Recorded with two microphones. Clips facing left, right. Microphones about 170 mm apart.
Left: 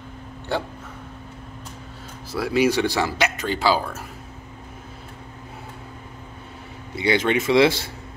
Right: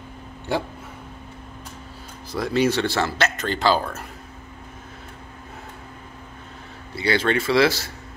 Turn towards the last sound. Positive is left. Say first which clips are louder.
# left 2 dB
turn(degrees=25)  # may be behind; listen again after turning